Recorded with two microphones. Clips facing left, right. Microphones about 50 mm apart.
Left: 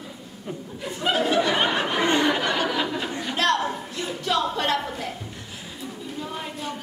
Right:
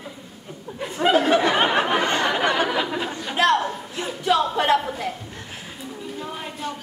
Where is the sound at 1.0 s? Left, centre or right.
Right.